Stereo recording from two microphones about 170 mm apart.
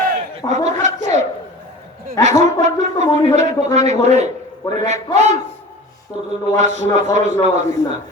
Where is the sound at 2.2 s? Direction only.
45° right (ahead or behind).